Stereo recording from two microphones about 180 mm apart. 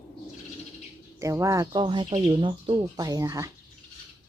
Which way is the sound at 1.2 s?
15° right (ahead or behind).